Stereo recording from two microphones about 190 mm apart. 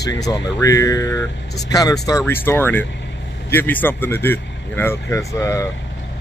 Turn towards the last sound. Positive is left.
turn(degrees=15)  # may be behind; listen again after turning